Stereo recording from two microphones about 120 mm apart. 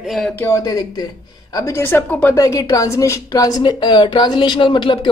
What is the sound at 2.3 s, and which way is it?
Speech, 30° left (ahead or behind).